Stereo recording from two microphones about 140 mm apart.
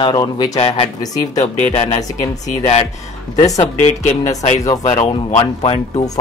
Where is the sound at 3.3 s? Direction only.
25° left (ahead or behind).